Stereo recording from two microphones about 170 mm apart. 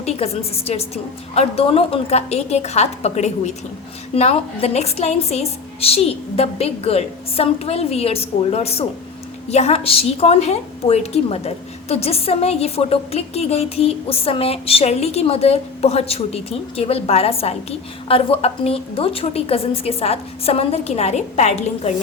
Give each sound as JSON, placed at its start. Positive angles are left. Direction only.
{"t": 0.0, "sound": "a woman's voice", "side_deg": 35}